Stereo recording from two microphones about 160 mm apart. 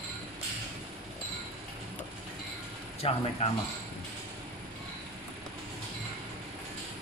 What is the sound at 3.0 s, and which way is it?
Speech, 40° left (ahead or behind).